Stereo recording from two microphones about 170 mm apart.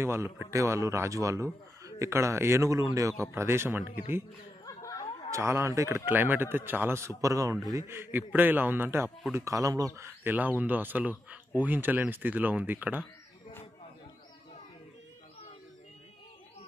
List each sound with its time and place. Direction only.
0.0 s speech: 15° right (ahead or behind)
4.6 s a sound: 20° left (ahead or behind)
5.3 s speech: 15° right (ahead or behind)